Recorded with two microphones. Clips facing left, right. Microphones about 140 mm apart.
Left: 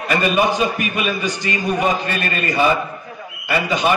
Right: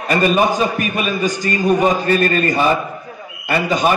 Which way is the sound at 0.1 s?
45° right (ahead or behind).